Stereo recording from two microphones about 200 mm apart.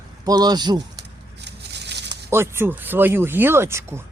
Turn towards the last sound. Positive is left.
turn(degrees=-10)  # may be behind; listen again after turning